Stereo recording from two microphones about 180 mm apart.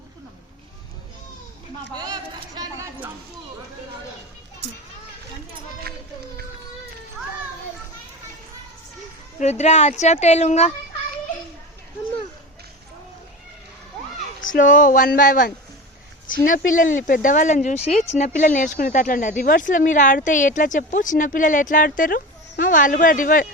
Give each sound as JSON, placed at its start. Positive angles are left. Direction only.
{"t": 2.6, "sound": "a sound", "side_deg": -15}
{"t": 9.4, "sound": "speech", "side_deg": 35}
{"t": 14.4, "sound": "speech", "side_deg": 45}